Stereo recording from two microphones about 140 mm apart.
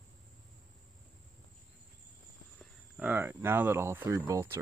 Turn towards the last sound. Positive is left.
turn(degrees=-15)  # may be behind; listen again after turning